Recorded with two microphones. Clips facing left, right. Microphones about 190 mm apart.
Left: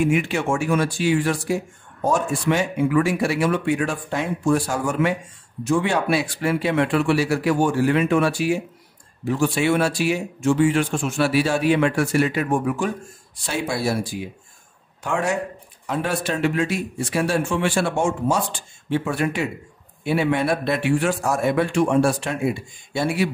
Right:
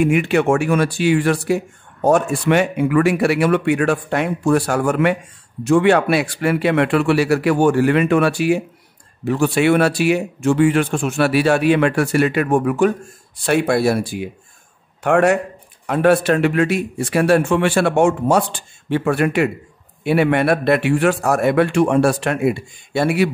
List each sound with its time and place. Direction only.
0.0 s speech: 60° right (ahead or behind)